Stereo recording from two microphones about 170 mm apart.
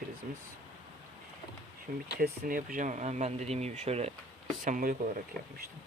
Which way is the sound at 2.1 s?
65° right (ahead or behind).